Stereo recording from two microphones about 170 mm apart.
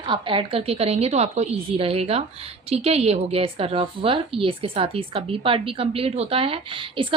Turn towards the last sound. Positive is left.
turn(degrees=-30)  # may be behind; listen again after turning